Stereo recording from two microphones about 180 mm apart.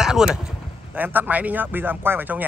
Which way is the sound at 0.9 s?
10° right (ahead or behind).